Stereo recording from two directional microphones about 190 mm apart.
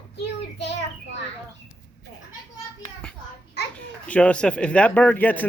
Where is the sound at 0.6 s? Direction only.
65° left (ahead or behind).